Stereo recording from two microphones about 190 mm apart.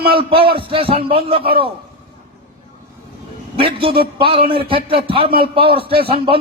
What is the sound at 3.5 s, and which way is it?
A man's voice, 30° right (ahead or behind).